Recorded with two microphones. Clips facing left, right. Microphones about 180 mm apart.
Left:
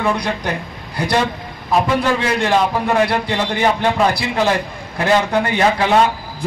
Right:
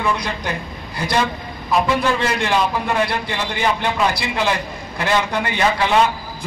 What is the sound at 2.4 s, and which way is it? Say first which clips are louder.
A man's voice: left 3 dB; 50° left (ahead or behind).